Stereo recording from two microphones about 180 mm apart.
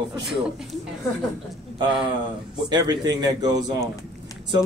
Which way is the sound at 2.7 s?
20° right (ahead or behind).